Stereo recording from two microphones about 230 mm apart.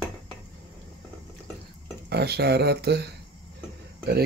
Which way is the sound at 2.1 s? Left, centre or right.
Right.